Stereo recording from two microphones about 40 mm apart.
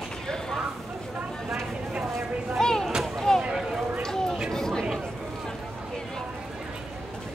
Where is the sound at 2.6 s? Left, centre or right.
Centre.